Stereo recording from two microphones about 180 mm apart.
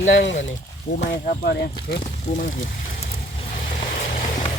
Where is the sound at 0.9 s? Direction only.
40° left (ahead or behind).